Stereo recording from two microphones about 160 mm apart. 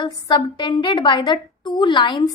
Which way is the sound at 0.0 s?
25° left (ahead or behind).